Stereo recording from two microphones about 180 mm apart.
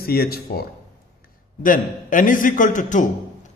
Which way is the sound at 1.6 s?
50° left (ahead or behind).